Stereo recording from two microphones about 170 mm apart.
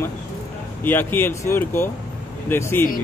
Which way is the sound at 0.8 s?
10° left (ahead or behind).